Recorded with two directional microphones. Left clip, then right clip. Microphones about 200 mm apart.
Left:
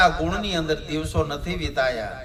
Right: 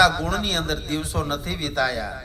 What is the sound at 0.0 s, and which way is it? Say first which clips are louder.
A man's voice: right 1 dB; 20° right (ahead or behind).